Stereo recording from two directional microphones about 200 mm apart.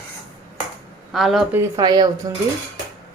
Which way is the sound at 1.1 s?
Centre (ahead or behind).